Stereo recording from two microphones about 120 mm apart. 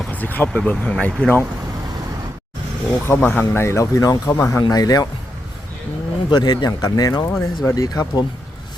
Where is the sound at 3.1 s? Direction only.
15° left (ahead or behind); by 5.0 s 30° left (ahead or behind).